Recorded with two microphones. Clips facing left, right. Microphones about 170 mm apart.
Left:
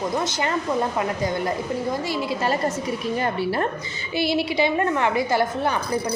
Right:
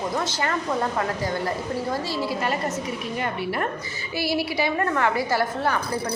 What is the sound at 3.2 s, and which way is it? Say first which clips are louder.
Speech: left 2 dB; 30° left (ahead or behind).